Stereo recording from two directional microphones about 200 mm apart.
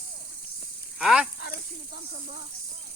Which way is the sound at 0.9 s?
Centre (ahead or behind).